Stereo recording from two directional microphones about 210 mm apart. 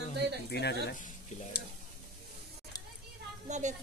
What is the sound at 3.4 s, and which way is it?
Speech, 35° right (ahead or behind).